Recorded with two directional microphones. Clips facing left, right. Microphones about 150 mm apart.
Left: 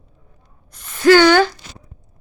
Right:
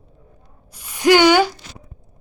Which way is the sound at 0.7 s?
10° right (ahead or behind).